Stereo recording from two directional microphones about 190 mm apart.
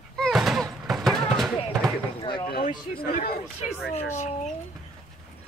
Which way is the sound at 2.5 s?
50° left (ahead or behind).